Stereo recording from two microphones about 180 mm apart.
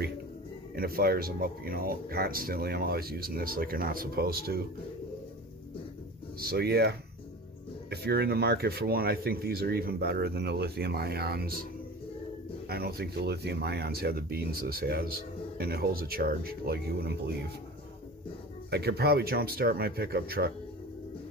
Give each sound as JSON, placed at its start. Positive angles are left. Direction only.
{"t": 0.7, "sound": "speech", "side_deg": -55}
{"t": 6.4, "sound": "speech", "side_deg": -60}
{"t": 12.6, "sound": "speech", "side_deg": -60}
{"t": 18.7, "sound": "speech", "side_deg": -60}